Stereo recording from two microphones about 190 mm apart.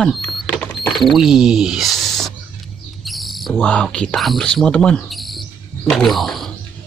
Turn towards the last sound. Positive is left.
turn(degrees=0)  # may be behind; listen again after turning